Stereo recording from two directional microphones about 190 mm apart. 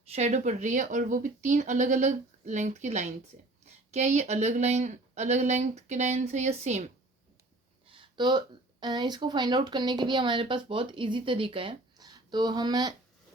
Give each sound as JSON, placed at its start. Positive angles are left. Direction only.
{"t": 0.0, "sound": "speech", "side_deg": -35}
{"t": 7.9, "sound": "speech", "side_deg": -25}